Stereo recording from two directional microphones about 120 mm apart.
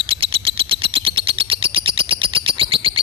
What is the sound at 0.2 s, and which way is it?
Bird, 50° right (ahead or behind).